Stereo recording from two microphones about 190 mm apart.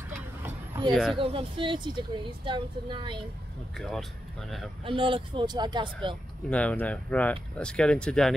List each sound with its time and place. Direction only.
0.7 s a sound: 10° right (ahead or behind)
1.1 s speech: 30° right (ahead or behind)
3.7 s speech: centre (ahead or behind)
4.8 s speech: 25° right (ahead or behind)
6.5 s speech: 5° left (ahead or behind)